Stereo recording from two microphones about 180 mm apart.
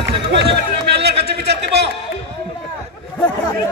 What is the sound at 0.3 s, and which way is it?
Music, 65° right (ahead or behind).